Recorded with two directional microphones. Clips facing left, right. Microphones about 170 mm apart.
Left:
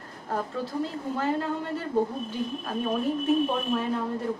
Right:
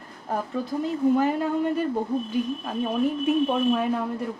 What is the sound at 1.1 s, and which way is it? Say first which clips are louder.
Speech: right 5 dB; 15° right (ahead or behind).